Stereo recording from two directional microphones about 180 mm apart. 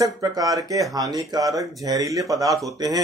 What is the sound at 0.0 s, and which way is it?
Speech, 20° right (ahead or behind).